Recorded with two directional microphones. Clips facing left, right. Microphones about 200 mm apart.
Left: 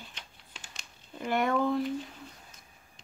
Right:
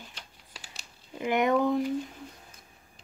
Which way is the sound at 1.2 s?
15° right (ahead or behind).